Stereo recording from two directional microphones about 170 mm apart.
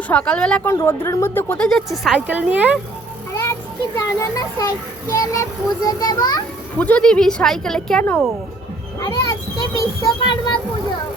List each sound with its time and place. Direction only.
0.1 s speech: 5° left (ahead or behind); by 2.8 s 10° right (ahead or behind)
3.9 s speech: 20° left (ahead or behind)
6.7 s speech: 10° left (ahead or behind)
9.6 s speech: 20° left (ahead or behind)